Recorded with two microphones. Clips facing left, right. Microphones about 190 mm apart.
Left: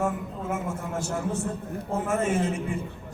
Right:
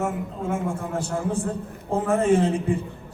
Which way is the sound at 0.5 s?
30° right (ahead or behind).